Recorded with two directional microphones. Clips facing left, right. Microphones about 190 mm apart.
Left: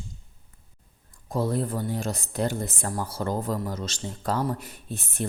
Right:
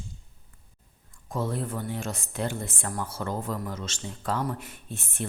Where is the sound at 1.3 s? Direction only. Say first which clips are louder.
Left 4 dB; 35° left (ahead or behind).